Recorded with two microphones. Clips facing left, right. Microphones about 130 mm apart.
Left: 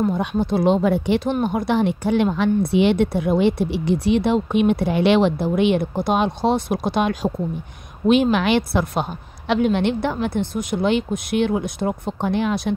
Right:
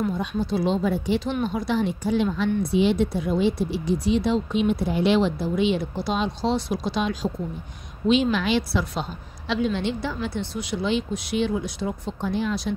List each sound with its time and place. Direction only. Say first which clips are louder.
0.1 s speech: left 5 dB; 60° left (ahead or behind)